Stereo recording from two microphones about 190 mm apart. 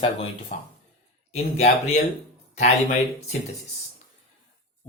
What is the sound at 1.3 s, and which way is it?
Speech, 35° left (ahead or behind).